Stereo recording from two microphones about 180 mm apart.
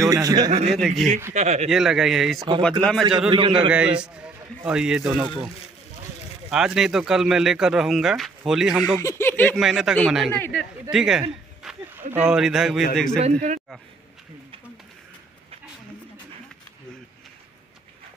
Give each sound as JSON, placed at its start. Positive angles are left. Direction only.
{"t": 0.0, "sound": "speech", "side_deg": -20}
{"t": 0.5, "sound": "speech", "side_deg": -40}
{"t": 0.7, "sound": "a man's voice", "side_deg": 0}
{"t": 1.3, "sound": "speech", "side_deg": -40}
{"t": 1.7, "sound": "a man's voice", "side_deg": 0}
{"t": 3.3, "sound": "a man's voice", "side_deg": -25}
{"t": 3.7, "sound": "a man's voice", "side_deg": -5}
{"t": 6.5, "sound": "a man's voice", "side_deg": -5}
{"t": 9.0, "sound": "speech", "side_deg": 10}
{"t": 9.6, "sound": "a man's voice", "side_deg": 0}
{"t": 13.2, "sound": "speech", "side_deg": -45}